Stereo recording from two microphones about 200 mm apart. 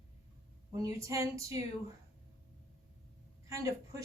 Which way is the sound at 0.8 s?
15° right (ahead or behind).